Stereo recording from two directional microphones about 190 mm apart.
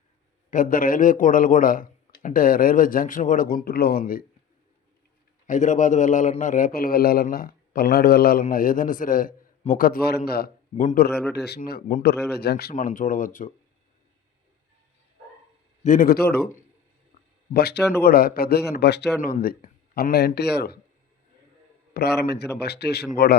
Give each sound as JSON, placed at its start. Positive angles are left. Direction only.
{"t": 0.5, "sound": "a man's voice", "side_deg": 45}
{"t": 5.5, "sound": "a man's voice", "side_deg": 40}
{"t": 15.8, "sound": "a man's voice", "side_deg": 45}
{"t": 17.5, "sound": "a man's voice", "side_deg": 55}
{"t": 21.9, "sound": "a man's voice", "side_deg": 60}